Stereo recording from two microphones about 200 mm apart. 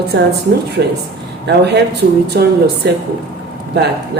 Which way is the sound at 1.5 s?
55° right (ahead or behind).